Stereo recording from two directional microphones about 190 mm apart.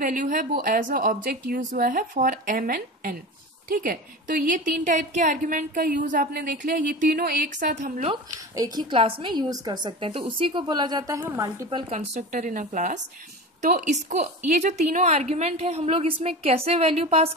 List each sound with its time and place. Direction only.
0.0 s a woman's voice: 45° right (ahead or behind)
8.1 s a woman's voice: 20° right (ahead or behind)
11.9 s a woman's voice: 40° right (ahead or behind)